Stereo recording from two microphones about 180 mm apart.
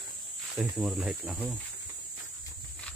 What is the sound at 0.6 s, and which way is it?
Speech, 5° right (ahead or behind).